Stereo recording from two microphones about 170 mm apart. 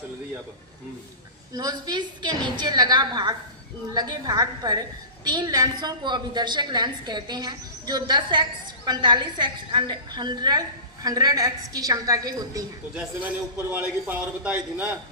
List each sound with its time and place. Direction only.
1.5 s a woman's voice: 25° right (ahead or behind)
13.7 s a man's voice: 10° right (ahead or behind)